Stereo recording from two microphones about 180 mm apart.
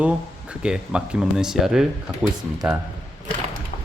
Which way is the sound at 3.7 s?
45° left (ahead or behind).